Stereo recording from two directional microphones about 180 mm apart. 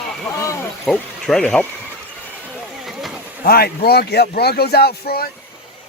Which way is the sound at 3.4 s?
60° left (ahead or behind).